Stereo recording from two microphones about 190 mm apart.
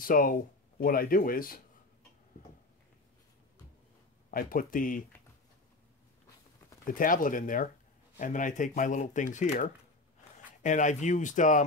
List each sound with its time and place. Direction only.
0.0 s speech: 45° left (ahead or behind)
4.3 s speech: 50° left (ahead or behind)
6.9 s speech: 45° left (ahead or behind)